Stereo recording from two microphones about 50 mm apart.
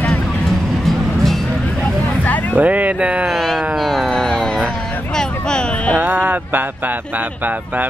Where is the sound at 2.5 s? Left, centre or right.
Right.